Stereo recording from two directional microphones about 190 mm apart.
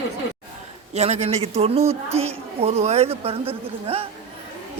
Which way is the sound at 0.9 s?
35° right (ahead or behind).